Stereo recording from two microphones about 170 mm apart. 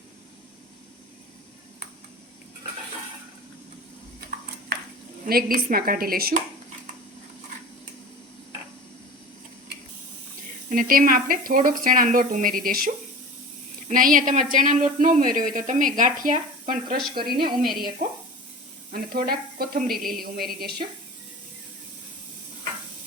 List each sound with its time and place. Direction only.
5.2 s a woman's voice: 60° right (ahead or behind)
10.7 s a woman's voice: 55° right (ahead or behind)
18.9 s a woman's voice: 60° right (ahead or behind)